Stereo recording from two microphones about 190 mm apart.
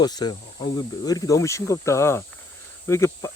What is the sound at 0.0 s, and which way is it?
Speech, 20° left (ahead or behind).